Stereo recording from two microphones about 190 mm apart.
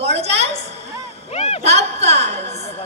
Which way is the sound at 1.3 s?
35° left (ahead or behind).